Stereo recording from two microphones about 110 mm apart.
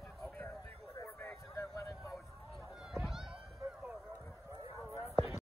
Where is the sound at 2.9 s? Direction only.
5° right (ahead or behind).